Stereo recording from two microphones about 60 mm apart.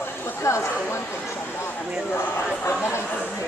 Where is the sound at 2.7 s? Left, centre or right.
Left.